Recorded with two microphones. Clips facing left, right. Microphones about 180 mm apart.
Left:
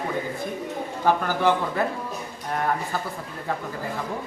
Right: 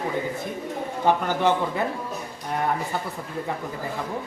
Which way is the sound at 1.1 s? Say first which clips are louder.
Even; 20° right (ahead or behind).